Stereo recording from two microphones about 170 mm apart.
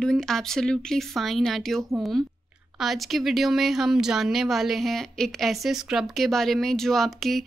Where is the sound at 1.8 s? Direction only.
15° right (ahead or behind).